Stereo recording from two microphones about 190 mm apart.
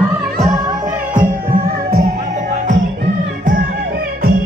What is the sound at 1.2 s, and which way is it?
Music, 50° right (ahead or behind).